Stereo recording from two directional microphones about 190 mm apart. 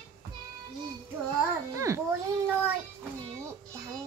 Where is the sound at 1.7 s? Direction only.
15° right (ahead or behind).